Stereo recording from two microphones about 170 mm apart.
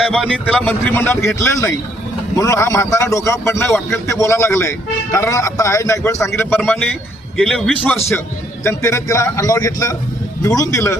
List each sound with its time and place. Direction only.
0.0 s a man's voice: centre (ahead or behind)
7.3 s a man's voice: 5° left (ahead or behind)
8.6 s a man's voice: 15° left (ahead or behind)